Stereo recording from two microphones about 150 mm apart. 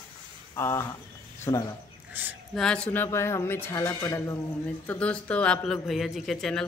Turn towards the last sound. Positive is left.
turn(degrees=0)  # may be behind; listen again after turning